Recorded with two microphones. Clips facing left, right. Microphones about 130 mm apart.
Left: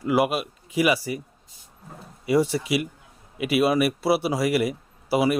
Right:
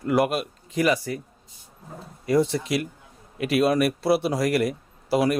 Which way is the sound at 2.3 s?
5° left (ahead or behind).